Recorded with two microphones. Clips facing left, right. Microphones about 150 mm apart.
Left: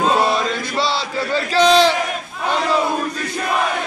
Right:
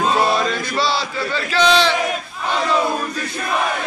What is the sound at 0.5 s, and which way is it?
Chant, 20° left (ahead or behind).